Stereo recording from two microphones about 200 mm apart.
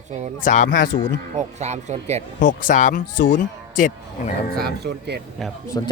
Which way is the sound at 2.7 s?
40° left (ahead or behind).